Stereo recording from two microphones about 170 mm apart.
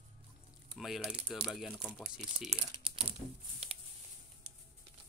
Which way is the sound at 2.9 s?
30° right (ahead or behind).